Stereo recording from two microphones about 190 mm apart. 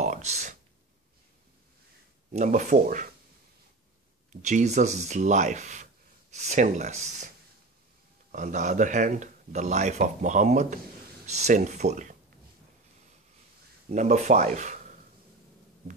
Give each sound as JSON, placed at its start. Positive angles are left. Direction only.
{"t": 0.0, "sound": "speech", "side_deg": -35}
{"t": 2.3, "sound": "speech", "side_deg": -40}
{"t": 4.3, "sound": "speech", "side_deg": -40}
{"t": 8.3, "sound": "speech", "side_deg": -40}
{"t": 13.8, "sound": "speech", "side_deg": -40}